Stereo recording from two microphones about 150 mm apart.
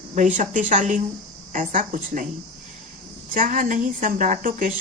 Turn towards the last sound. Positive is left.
turn(degrees=-65)  # may be behind; listen again after turning